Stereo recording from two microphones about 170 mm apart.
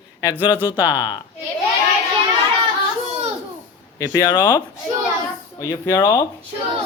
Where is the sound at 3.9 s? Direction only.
20° left (ahead or behind).